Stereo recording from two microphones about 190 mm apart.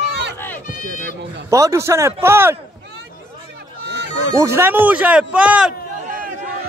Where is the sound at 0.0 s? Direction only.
65° right (ahead or behind).